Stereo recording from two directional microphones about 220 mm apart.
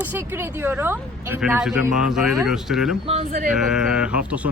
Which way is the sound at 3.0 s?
30° right (ahead or behind).